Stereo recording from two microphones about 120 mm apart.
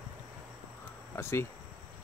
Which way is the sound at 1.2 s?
20° left (ahead or behind).